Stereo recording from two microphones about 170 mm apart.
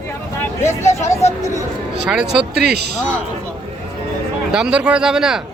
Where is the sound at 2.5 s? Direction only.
75° right (ahead or behind).